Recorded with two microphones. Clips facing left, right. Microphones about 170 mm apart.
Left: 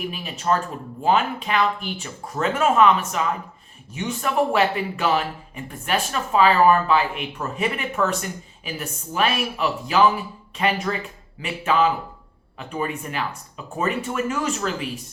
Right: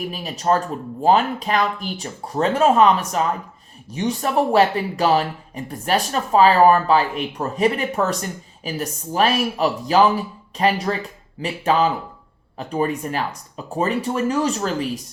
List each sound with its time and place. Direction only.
0.1 s speech: 40° right (ahead or behind)